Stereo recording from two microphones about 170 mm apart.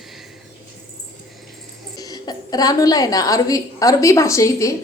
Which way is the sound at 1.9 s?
20° left (ahead or behind).